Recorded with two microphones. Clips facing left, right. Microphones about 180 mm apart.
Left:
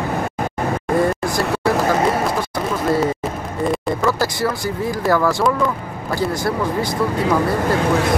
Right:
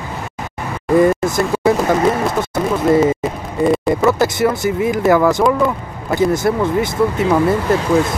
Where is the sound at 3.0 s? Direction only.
Centre (ahead or behind).